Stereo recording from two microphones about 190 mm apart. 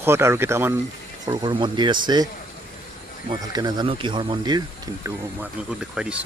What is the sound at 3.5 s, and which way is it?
Speech, 25° right (ahead or behind).